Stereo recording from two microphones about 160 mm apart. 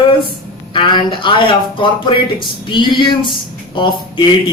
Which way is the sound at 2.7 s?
30° left (ahead or behind).